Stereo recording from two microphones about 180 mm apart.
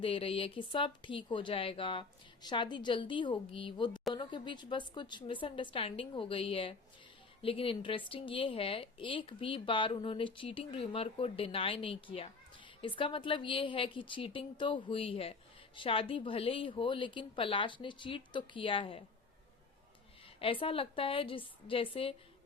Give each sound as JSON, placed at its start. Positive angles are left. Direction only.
{"t": 0.0, "sound": "a woman's voice", "side_deg": 30}
{"t": 20.4, "sound": "a woman's voice", "side_deg": 30}